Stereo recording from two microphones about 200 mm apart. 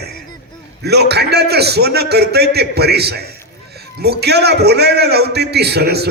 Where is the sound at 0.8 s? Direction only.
55° right (ahead or behind).